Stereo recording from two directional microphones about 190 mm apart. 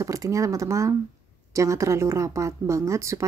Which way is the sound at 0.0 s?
15° right (ahead or behind).